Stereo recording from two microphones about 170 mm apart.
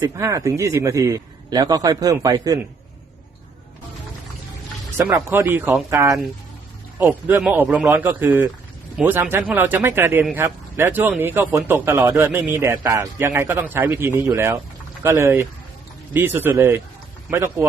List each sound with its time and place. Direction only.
0.0 s a man's voice: 20° right (ahead or behind)
4.9 s a man's voice: 10° right (ahead or behind)